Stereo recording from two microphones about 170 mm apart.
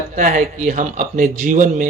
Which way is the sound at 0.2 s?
45° right (ahead or behind).